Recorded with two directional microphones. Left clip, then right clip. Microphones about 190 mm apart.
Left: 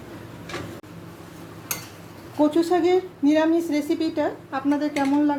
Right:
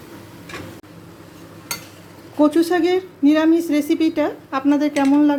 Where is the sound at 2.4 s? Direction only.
30° right (ahead or behind).